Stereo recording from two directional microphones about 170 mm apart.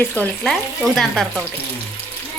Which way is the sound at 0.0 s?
10° left (ahead or behind).